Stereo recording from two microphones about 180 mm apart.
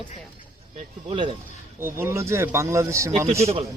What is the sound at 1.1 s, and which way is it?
Speech, 30° right (ahead or behind).